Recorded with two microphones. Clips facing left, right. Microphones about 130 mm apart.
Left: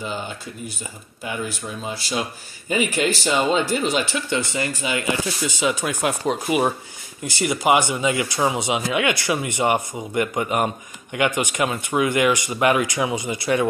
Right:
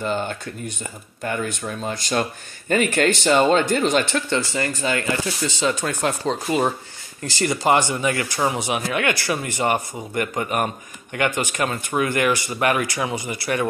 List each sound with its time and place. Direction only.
0.0 s speech: 5° left (ahead or behind)
3.3 s speech: 5° left (ahead or behind)